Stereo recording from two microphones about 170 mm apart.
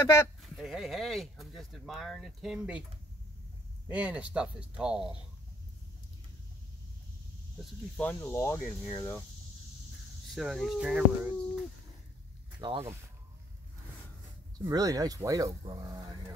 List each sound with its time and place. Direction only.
0.0 s speech: 15° left (ahead or behind)
0.4 s speech: centre (ahead or behind)
3.9 s speech: 10° right (ahead or behind)
8.0 s speech: 10° left (ahead or behind)
10.3 s speech: centre (ahead or behind)
12.5 s speech: 25° right (ahead or behind)
14.7 s speech: 20° right (ahead or behind)